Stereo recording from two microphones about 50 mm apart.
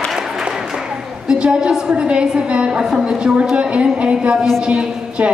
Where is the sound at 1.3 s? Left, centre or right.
Centre.